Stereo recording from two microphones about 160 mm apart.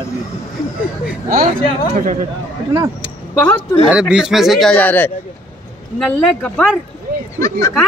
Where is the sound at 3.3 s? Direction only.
15° left (ahead or behind).